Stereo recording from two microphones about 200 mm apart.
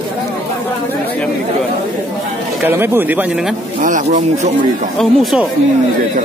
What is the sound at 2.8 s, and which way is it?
Speech, 10° right (ahead or behind).